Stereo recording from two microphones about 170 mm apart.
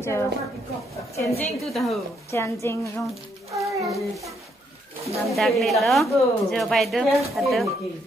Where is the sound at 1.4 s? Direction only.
Centre (ahead or behind).